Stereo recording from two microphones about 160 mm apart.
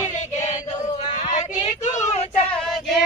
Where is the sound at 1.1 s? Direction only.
50° left (ahead or behind).